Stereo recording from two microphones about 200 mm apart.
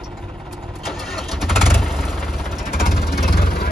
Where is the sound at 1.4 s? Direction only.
Centre (ahead or behind).